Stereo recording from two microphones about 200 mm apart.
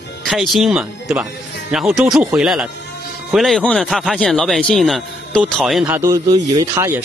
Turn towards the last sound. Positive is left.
turn(degrees=-15)  # may be behind; listen again after turning